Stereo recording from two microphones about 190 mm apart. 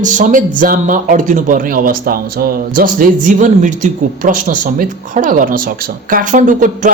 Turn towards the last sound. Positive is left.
turn(degrees=-40)  # may be behind; listen again after turning